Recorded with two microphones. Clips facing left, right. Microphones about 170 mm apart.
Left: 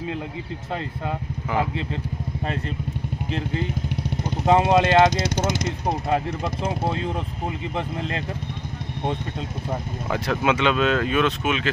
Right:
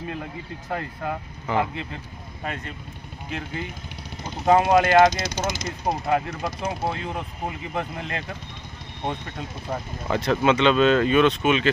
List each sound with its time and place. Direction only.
4.5 s speech: 20° left (ahead or behind)
5.3 s speech: 65° left (ahead or behind)
6.1 s speech: 30° left (ahead or behind)
10.0 s speech: 5° left (ahead or behind)